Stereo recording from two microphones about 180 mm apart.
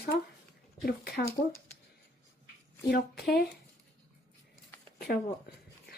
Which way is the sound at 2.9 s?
60° left (ahead or behind).